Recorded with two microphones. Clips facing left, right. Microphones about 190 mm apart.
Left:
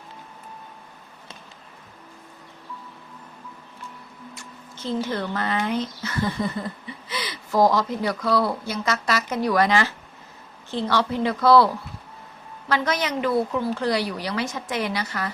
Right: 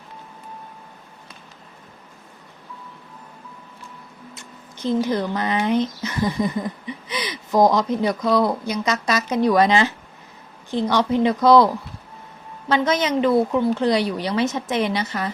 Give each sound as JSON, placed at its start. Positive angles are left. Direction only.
{"t": 4.4, "sound": "speech", "side_deg": -15}